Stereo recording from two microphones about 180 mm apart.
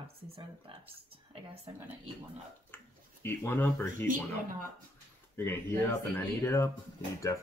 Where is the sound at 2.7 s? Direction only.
10° left (ahead or behind).